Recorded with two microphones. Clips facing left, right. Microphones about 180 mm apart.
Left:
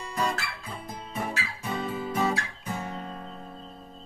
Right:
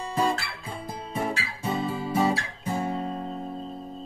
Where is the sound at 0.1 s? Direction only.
30° right (ahead or behind).